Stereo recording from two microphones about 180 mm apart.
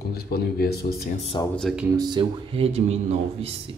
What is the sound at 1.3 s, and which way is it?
Speech, 25° left (ahead or behind).